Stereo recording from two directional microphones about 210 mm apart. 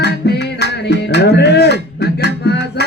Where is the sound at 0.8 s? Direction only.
55° left (ahead or behind).